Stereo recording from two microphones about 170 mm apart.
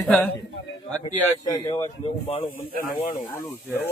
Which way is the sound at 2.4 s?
45° left (ahead or behind).